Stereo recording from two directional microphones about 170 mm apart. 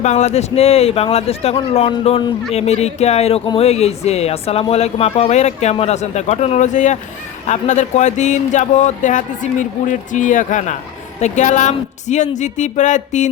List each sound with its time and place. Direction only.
0.0 s speech: 40° left (ahead or behind)